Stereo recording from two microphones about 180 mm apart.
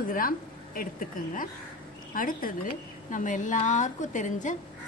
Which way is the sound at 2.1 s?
50° left (ahead or behind).